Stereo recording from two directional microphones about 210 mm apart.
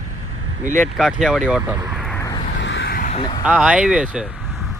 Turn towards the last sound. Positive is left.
turn(degrees=-5)  # may be behind; listen again after turning